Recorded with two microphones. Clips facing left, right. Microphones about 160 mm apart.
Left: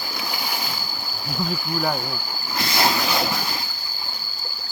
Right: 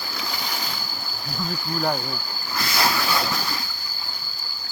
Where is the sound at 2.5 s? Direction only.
25° left (ahead or behind).